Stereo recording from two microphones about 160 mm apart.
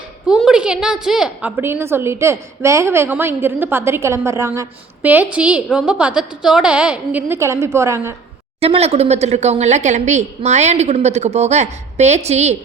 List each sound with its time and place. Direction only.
0.3 s a woman's voice: centre (ahead or behind); by 8.1 s 15° right (ahead or behind)
8.6 s a woman's voice: 40° right (ahead or behind)